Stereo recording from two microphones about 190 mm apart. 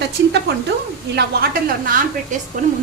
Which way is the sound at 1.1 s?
50° right (ahead or behind).